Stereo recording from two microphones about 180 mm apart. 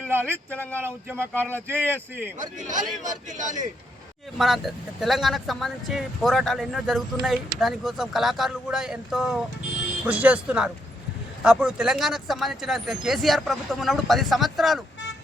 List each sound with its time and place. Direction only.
0.5 s speech: 10° left (ahead or behind)
0.8 s speech: 10° right (ahead or behind)
1.3 s speech: 10° left (ahead or behind)
1.7 s speech: 10° right (ahead or behind)
2.6 s speech: 45° right (ahead or behind)
4.4 s speech: centre (ahead or behind)